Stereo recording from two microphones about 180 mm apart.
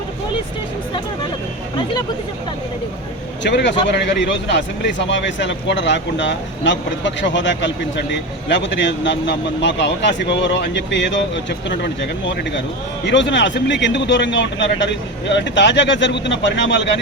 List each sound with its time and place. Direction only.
3.4 s speech: 75° left (ahead or behind)